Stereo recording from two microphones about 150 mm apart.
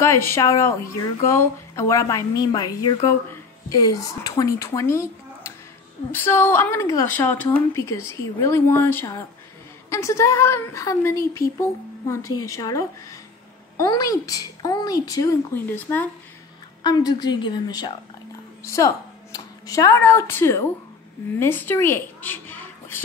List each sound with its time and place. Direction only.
0.0 s a woman's voice: 15° left (ahead or behind)
16.8 s a woman's voice: 25° left (ahead or behind)